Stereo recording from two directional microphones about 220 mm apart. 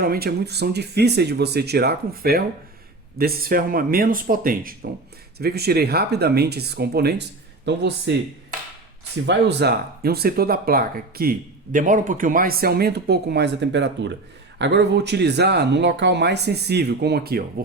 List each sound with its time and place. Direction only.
0.0 s speech: 45° right (ahead or behind)
9.2 s speech: 50° right (ahead or behind)